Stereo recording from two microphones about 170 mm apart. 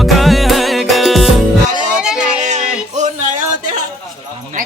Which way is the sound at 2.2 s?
45° right (ahead or behind).